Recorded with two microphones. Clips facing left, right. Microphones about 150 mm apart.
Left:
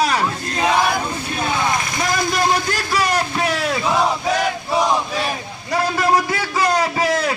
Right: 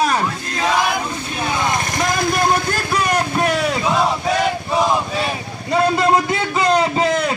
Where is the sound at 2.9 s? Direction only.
55° right (ahead or behind).